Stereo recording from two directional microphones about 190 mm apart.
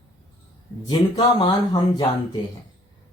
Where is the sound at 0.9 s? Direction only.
20° left (ahead or behind).